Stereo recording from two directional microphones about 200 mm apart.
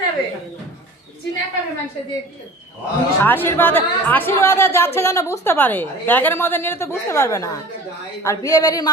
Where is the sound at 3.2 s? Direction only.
10° left (ahead or behind).